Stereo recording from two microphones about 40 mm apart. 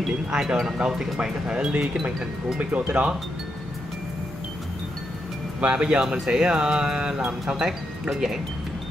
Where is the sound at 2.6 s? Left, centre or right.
Right.